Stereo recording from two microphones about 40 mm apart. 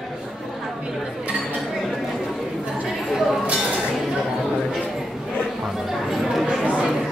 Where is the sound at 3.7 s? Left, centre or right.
Centre.